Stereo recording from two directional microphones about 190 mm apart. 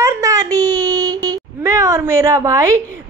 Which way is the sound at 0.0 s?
15° right (ahead or behind).